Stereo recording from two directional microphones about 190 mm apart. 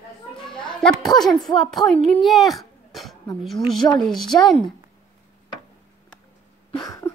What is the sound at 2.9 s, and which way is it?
Throat clearing, centre (ahead or behind).